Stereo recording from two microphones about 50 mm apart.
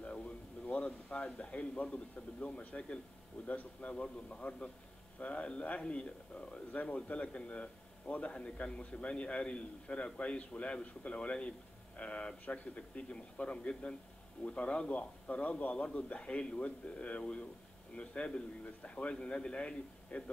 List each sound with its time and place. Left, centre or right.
0.0 s a sound: left
2.4 s a man's voice: left
3.9 s a man's voice: centre
6.5 s a man's voice: left